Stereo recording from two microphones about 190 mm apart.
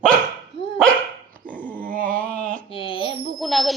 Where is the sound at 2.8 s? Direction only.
25° left (ahead or behind).